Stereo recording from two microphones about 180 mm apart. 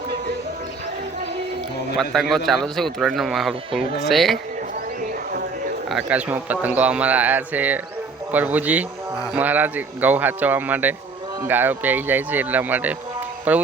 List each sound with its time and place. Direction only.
2.1 s a man's voice: centre (ahead or behind)
4.9 s horse: 55° right (ahead or behind)
5.9 s speech: 5° right (ahead or behind)